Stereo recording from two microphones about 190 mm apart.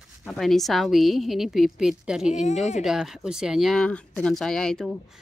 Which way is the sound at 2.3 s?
40° left (ahead or behind).